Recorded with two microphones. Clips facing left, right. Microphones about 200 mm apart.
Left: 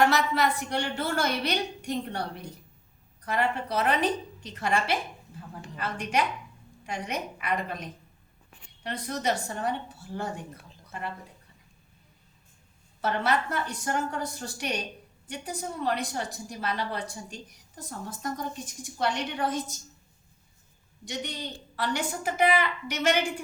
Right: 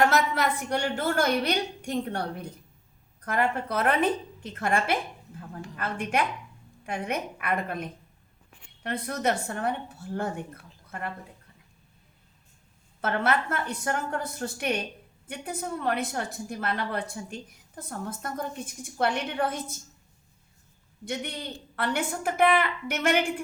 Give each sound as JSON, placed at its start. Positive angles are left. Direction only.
{"t": 0.0, "sound": "a woman's voice", "side_deg": -50}
{"t": 13.0, "sound": "a woman's voice", "side_deg": -55}
{"t": 21.0, "sound": "a woman's voice", "side_deg": -55}